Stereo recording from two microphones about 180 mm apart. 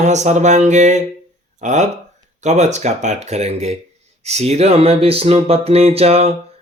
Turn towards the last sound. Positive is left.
turn(degrees=-35)  # may be behind; listen again after turning